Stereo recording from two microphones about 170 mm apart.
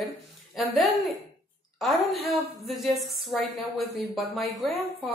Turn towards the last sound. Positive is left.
turn(degrees=0)  # may be behind; listen again after turning